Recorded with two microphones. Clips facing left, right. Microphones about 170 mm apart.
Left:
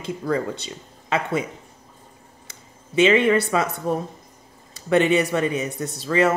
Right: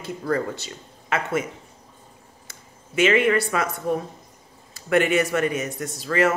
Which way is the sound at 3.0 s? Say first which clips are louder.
Left 2 dB; 25° left (ahead or behind).